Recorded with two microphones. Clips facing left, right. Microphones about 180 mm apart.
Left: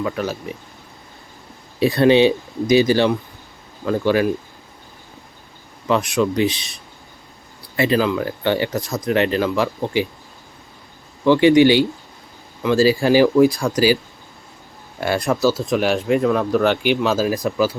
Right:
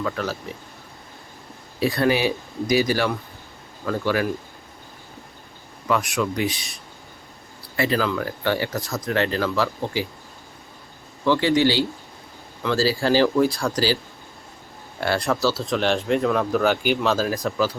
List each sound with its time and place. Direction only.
0.0 s speech: 20° left (ahead or behind)
1.8 s speech: 25° left (ahead or behind)
5.9 s speech: 25° left (ahead or behind)
7.8 s speech: 20° left (ahead or behind)
11.3 s speech: 15° left (ahead or behind)
15.0 s speech: 15° left (ahead or behind)
17.2 s speech: 15° left (ahead or behind)